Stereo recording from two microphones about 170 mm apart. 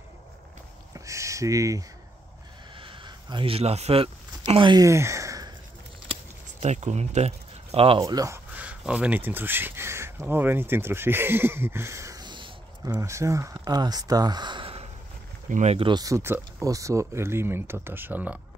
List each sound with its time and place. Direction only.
0.9 s a sound: 20° right (ahead or behind)
6.6 s speech: 40° right (ahead or behind)
8.0 s speech: 20° right (ahead or behind)
8.5 s speech: 5° right (ahead or behind); by 15.9 s 40° right (ahead or behind)
15.9 s speech: 20° right (ahead or behind)